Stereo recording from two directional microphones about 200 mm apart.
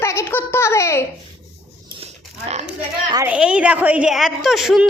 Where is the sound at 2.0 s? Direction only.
30° right (ahead or behind).